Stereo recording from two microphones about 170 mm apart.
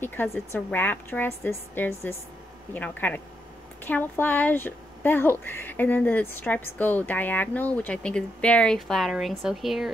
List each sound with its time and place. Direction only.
0.0 s a woman's voice: 10° left (ahead or behind)